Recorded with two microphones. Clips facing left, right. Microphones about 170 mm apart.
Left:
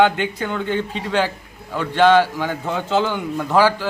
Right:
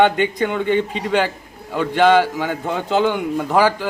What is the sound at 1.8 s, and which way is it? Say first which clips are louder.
A man's voice: even; 10° right (ahead or behind).